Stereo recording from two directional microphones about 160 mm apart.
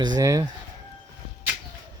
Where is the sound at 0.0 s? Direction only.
25° right (ahead or behind).